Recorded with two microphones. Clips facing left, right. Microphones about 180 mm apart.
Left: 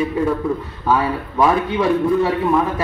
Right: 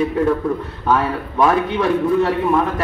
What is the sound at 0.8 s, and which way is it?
A man's voice, 5° left (ahead or behind).